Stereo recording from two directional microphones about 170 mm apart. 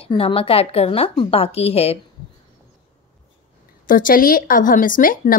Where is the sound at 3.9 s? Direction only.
55° left (ahead or behind).